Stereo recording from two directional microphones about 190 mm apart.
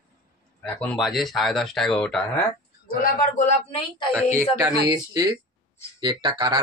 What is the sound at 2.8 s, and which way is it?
A man's voice, 50° left (ahead or behind).